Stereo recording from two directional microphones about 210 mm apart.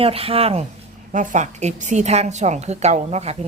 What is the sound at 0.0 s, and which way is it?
A woman's voice, 25° right (ahead or behind).